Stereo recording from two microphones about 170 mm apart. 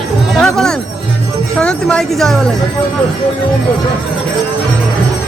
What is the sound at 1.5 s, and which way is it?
Music, 5° left (ahead or behind).